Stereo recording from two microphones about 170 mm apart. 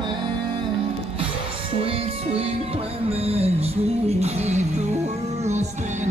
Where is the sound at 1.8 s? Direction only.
35° right (ahead or behind).